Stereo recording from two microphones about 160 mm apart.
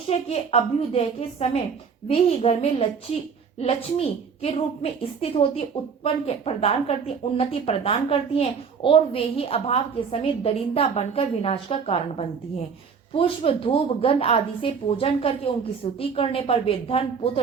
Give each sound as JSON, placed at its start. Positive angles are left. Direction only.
{"t": 0.1, "sound": "a woman's voice", "side_deg": 40}